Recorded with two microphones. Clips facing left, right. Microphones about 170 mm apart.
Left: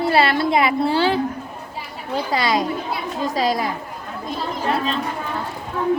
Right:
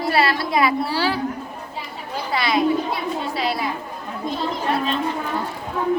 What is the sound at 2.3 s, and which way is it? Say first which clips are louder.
A woman's voice: right 2 dB; 40° left (ahead or behind).